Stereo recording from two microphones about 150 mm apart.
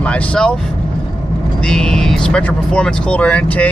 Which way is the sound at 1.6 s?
5° left (ahead or behind).